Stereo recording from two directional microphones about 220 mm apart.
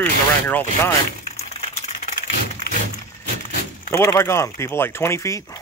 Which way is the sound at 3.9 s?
15° left (ahead or behind).